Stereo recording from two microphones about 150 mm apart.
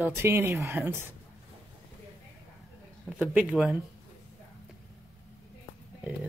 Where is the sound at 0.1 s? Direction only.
15° right (ahead or behind).